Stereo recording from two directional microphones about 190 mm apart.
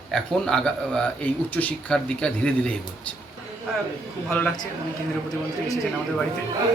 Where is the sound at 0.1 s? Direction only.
5° left (ahead or behind).